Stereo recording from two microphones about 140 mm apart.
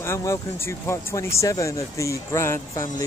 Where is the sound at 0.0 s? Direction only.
20° left (ahead or behind).